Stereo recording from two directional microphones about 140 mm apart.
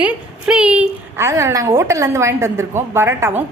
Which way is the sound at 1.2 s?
20° right (ahead or behind).